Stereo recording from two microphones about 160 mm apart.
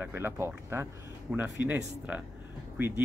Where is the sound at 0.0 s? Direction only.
15° right (ahead or behind).